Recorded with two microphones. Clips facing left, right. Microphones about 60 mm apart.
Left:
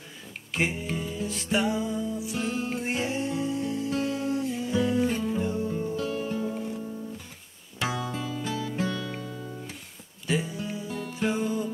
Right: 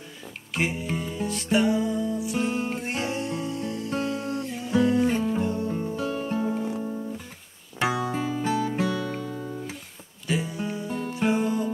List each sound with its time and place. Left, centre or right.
0.6 s music: centre
5.0 s music: centre
5.4 s music: centre
5.9 s music: right
6.7 s guitar: right
7.8 s music: centre
8.1 s music: right
8.5 s music: right
9.3 s music: right
10.2 s music: centre